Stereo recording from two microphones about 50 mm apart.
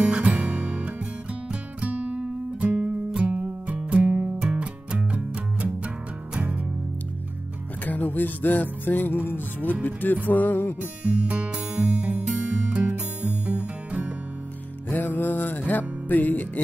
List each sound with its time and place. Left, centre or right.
0.0 s music: right
7.8 s music: left
11.1 s music: right
14.9 s music: left